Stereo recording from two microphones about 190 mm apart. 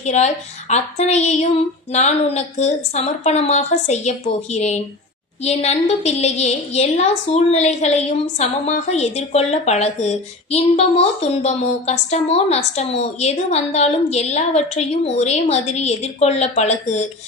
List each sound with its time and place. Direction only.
0.0 s a woman's voice: 35° left (ahead or behind)